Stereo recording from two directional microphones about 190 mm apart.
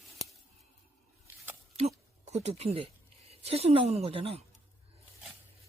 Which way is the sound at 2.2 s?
35° right (ahead or behind).